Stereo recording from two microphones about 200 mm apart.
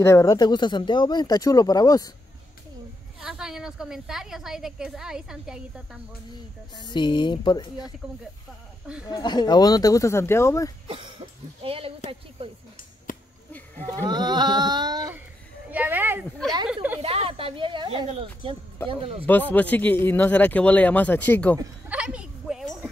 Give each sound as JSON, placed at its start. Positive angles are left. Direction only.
{"t": 0.0, "sound": "speech", "side_deg": 15}
{"t": 3.2, "sound": "a woman's voice", "side_deg": -5}
{"t": 6.8, "sound": "speech", "side_deg": 20}
{"t": 9.0, "sound": "speech", "side_deg": 20}
{"t": 10.9, "sound": "speech", "side_deg": -25}
{"t": 13.9, "sound": "speech", "side_deg": -20}
{"t": 17.0, "sound": "speech", "side_deg": -30}
{"t": 19.5, "sound": "speech", "side_deg": 10}
{"t": 21.5, "sound": "a sound", "side_deg": -5}